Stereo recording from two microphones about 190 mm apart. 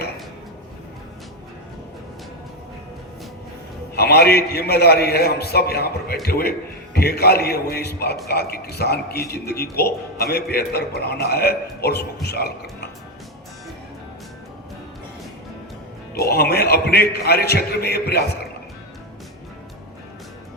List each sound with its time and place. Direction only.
3.9 s a man's voice: 60° left (ahead or behind)
16.1 s a man's voice: 55° left (ahead or behind)